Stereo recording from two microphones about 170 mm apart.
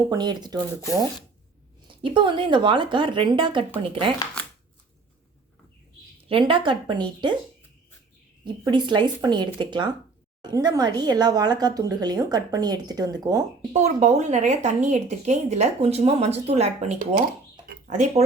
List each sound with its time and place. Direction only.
0.1 s a woman's voice: 25° right (ahead or behind)
2.0 s a woman's voice: 30° right (ahead or behind)
6.2 s a woman's voice: 30° right (ahead or behind)
8.6 s a woman's voice: 25° right (ahead or behind)
13.7 s speech: 40° right (ahead or behind)